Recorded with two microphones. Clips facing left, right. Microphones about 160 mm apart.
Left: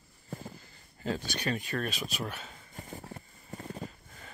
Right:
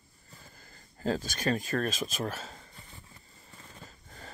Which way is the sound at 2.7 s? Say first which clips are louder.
Left 10 dB; 45° left (ahead or behind).